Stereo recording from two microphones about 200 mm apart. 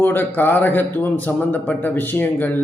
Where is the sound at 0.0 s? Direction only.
10° left (ahead or behind).